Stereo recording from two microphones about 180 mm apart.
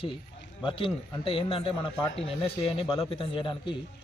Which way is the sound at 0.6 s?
30° left (ahead or behind).